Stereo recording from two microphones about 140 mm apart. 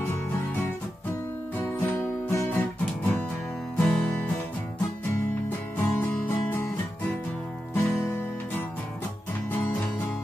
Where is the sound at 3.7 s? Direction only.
5° left (ahead or behind).